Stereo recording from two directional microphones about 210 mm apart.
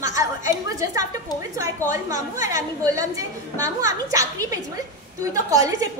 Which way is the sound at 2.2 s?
15° right (ahead or behind).